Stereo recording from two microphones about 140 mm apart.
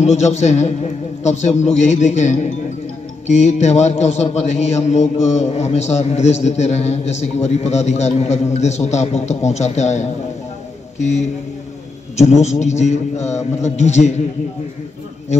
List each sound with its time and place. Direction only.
0.0 s a man's voice: 50° left (ahead or behind)